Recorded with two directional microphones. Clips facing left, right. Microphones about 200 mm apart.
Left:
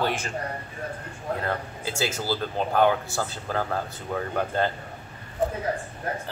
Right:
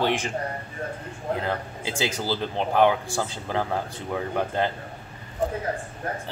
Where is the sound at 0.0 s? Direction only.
15° right (ahead or behind).